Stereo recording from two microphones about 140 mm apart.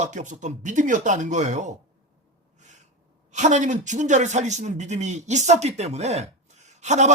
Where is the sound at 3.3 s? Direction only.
60° right (ahead or behind).